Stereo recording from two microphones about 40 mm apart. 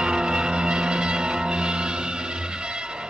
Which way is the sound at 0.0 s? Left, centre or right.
Right.